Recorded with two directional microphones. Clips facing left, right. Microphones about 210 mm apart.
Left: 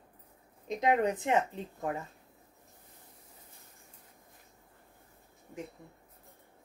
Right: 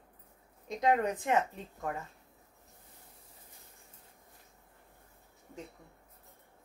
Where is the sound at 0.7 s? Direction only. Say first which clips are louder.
Left 1 dB; 20° left (ahead or behind).